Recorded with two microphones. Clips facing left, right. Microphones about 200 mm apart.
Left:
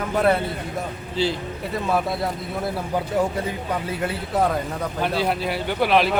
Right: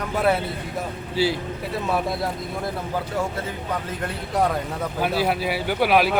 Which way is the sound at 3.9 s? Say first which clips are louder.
Left 3 dB; 5° left (ahead or behind).